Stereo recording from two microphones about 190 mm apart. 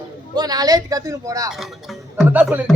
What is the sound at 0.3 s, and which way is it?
A man's voice, 20° right (ahead or behind).